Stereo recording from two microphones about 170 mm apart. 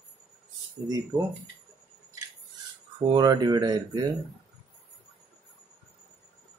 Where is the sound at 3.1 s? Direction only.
25° right (ahead or behind).